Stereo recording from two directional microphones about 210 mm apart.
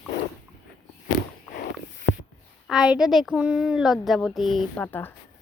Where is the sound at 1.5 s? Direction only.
55° left (ahead or behind).